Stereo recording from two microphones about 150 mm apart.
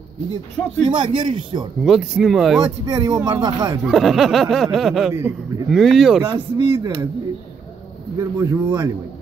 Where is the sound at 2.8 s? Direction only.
25° right (ahead or behind).